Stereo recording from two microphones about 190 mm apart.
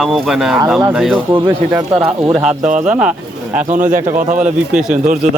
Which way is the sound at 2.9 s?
5° right (ahead or behind).